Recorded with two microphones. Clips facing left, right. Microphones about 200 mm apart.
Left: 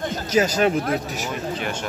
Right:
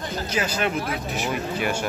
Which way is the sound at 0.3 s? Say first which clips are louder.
Left 7 dB; 40° left (ahead or behind).